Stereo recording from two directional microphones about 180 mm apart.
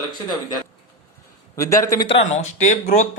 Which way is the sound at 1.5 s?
20° left (ahead or behind).